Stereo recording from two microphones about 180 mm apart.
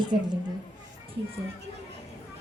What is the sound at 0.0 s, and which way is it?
Speech, 25° right (ahead or behind).